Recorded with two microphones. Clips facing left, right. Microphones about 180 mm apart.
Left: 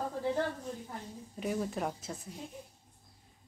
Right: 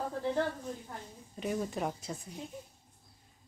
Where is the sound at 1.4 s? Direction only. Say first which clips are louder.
Even; centre (ahead or behind).